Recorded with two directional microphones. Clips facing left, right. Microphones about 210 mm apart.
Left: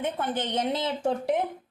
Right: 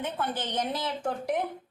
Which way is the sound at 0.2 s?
25° left (ahead or behind).